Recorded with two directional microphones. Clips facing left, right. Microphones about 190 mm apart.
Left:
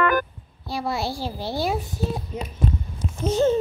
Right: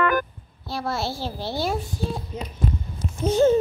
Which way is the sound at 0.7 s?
15° left (ahead or behind).